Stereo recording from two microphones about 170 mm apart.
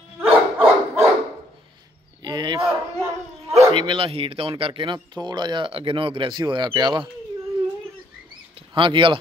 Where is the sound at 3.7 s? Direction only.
30° right (ahead or behind).